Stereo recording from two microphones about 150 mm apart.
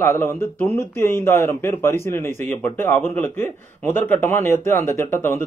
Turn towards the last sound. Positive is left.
turn(degrees=15)  # may be behind; listen again after turning